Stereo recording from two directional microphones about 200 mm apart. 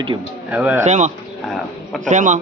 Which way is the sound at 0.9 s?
35° right (ahead or behind).